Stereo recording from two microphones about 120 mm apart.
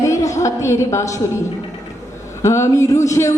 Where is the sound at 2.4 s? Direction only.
25° left (ahead or behind).